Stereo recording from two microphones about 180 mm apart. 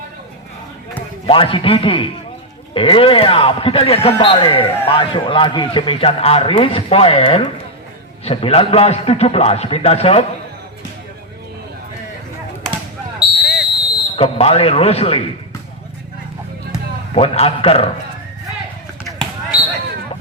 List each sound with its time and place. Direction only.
1.3 s a man's voice: 30° left (ahead or behind)
13.1 s basketball bounce: centre (ahead or behind)
14.2 s a man's voice: 35° left (ahead or behind)
17.2 s a man's voice: 30° left (ahead or behind)